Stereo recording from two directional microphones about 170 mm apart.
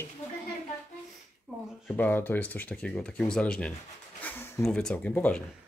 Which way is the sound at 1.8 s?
10° left (ahead or behind).